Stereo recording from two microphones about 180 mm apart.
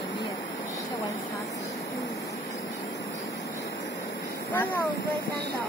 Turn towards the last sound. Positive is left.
turn(degrees=10)  # may be behind; listen again after turning